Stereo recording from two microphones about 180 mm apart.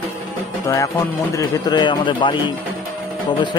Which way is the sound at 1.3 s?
25° left (ahead or behind).